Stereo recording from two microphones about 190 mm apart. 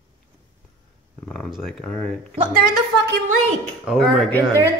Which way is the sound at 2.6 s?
65° right (ahead or behind).